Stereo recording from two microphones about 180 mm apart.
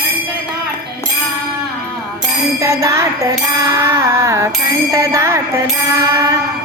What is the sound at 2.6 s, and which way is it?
Music, 15° right (ahead or behind).